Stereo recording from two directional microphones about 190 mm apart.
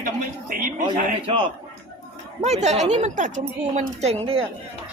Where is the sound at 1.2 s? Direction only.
30° right (ahead or behind).